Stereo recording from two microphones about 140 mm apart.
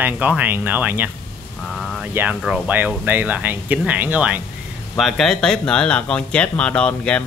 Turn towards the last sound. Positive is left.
turn(degrees=10)  # may be behind; listen again after turning